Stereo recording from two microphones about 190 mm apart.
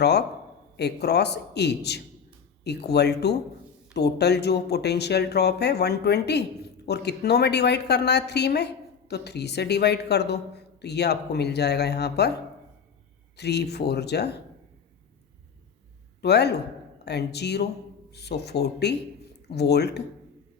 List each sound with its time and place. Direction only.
0.0 s a woman's voice: 60° left (ahead or behind)
13.3 s a woman's voice: 60° left (ahead or behind)
16.2 s a woman's voice: 60° left (ahead or behind)